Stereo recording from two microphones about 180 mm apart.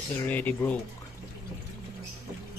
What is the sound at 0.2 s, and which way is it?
Speech, 10° left (ahead or behind).